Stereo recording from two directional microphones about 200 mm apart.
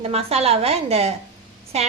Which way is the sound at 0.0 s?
30° right (ahead or behind).